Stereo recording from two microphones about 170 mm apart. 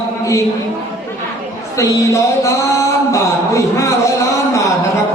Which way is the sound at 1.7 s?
20° left (ahead or behind).